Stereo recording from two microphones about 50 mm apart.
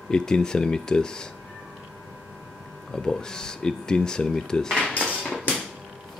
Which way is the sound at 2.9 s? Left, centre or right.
Centre.